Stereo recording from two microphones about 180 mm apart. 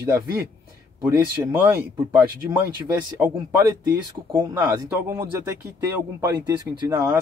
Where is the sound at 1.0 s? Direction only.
10° right (ahead or behind).